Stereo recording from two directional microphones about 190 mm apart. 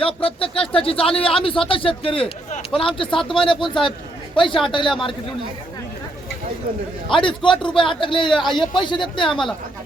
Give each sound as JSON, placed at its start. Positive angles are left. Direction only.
{"t": 0.0, "sound": "speech", "side_deg": 30}
{"t": 7.1, "sound": "speech", "side_deg": 25}
{"t": 8.3, "sound": "a man's voice", "side_deg": 0}
{"t": 8.5, "sound": "speech", "side_deg": 25}
{"t": 9.3, "sound": "a man's voice", "side_deg": 0}